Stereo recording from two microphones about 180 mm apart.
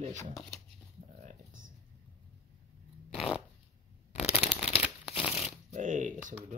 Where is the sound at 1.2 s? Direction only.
50° right (ahead or behind).